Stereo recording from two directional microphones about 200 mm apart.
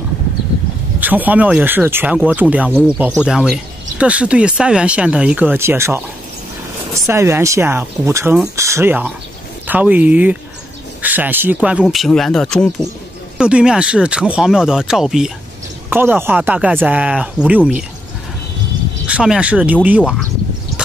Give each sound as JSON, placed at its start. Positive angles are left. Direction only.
{"t": 1.0, "sound": "speech", "side_deg": -10}
{"t": 19.0, "sound": "speech", "side_deg": -5}